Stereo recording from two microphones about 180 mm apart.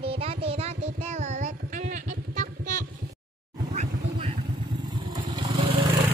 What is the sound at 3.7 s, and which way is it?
Vehicle, 35° right (ahead or behind).